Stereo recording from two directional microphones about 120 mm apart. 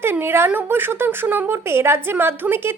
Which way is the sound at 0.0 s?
20° right (ahead or behind).